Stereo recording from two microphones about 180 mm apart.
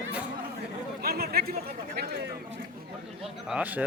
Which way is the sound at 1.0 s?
60° right (ahead or behind).